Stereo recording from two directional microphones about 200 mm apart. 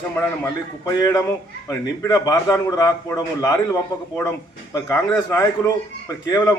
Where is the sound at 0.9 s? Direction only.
15° left (ahead or behind).